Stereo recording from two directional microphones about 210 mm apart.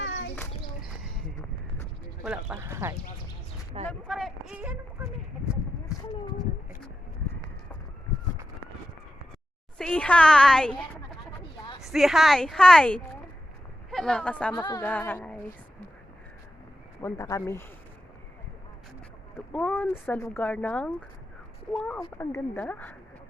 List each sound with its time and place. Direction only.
0.0 s a sound: 60° left (ahead or behind)
2.2 s speech: 5° right (ahead or behind)
4.0 s speech: centre (ahead or behind)
5.8 s a sound: 20° left (ahead or behind)
9.7 s a woman's voice: 5° left (ahead or behind)
14.5 s speech: 20° left (ahead or behind)
17.0 s speech: 15° left (ahead or behind)
19.5 s a woman's voice: 5° left (ahead or behind)